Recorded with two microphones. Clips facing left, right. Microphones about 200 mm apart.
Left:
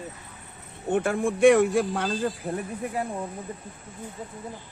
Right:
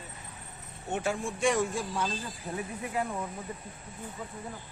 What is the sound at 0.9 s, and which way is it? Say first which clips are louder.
A man's voice: left 8 dB; 55° left (ahead or behind).